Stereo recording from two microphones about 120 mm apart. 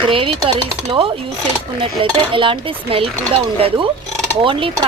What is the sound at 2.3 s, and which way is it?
Speech, 45° right (ahead or behind).